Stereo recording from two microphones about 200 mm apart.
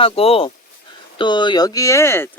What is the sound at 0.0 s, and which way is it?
Speech, 30° left (ahead or behind).